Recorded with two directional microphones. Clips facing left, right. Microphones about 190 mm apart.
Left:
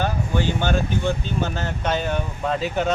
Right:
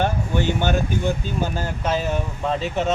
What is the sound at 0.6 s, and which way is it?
Speech, 15° right (ahead or behind).